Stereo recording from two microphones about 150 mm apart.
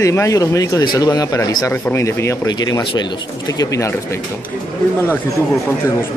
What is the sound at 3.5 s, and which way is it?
Speech, 20° left (ahead or behind).